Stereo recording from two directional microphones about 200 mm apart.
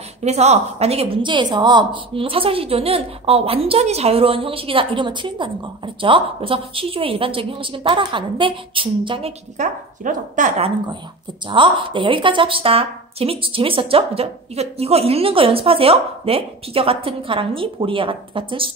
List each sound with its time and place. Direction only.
0.2 s speech: 35° right (ahead or behind)
9.6 s speech: 40° right (ahead or behind)
11.4 s speech: 25° right (ahead or behind)